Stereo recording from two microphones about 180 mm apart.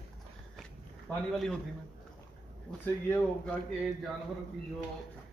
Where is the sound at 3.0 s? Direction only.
10° left (ahead or behind).